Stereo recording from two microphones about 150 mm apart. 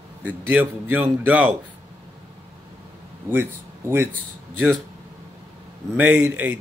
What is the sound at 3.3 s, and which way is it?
Speech, 15° right (ahead or behind).